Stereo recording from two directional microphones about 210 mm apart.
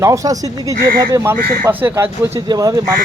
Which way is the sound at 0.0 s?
15° right (ahead or behind).